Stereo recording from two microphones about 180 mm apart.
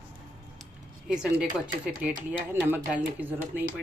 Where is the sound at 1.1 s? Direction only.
5° right (ahead or behind).